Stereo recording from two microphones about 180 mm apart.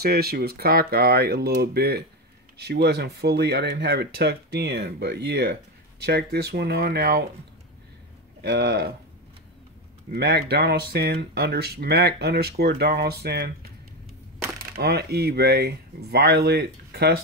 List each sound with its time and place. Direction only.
0.0 s speech: 60° right (ahead or behind)
8.4 s speech: 65° right (ahead or behind)
10.1 s speech: 60° right (ahead or behind)
14.8 s speech: 65° right (ahead or behind)